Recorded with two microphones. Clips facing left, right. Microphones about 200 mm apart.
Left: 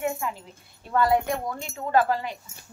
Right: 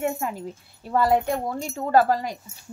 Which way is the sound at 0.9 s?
25° right (ahead or behind).